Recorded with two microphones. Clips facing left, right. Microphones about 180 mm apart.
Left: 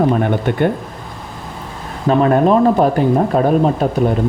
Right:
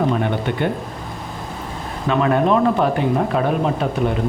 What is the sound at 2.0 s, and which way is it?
Speech, 40° left (ahead or behind).